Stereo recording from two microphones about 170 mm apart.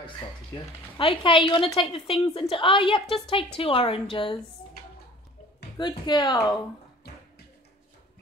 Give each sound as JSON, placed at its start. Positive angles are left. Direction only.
{"t": 0.9, "sound": "a woman's voice", "side_deg": 30}
{"t": 5.8, "sound": "speech", "side_deg": 25}